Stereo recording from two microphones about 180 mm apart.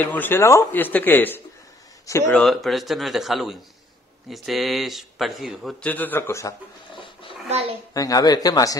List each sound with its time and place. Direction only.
0.0 s a man's voice: 10° left (ahead or behind)
2.3 s a man's voice: centre (ahead or behind)
7.0 s a sound: 30° left (ahead or behind)
7.4 s a child's voice: 35° right (ahead or behind)
7.9 s speech: 20° left (ahead or behind)